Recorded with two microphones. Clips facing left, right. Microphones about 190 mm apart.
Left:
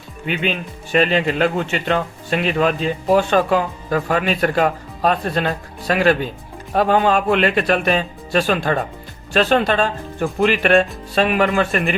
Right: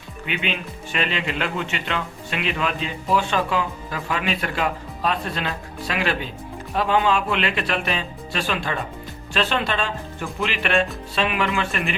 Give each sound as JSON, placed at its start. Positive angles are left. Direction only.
{"t": 0.3, "sound": "speech", "side_deg": 40}